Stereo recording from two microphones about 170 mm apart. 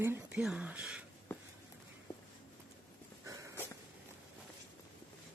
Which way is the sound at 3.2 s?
20° right (ahead or behind).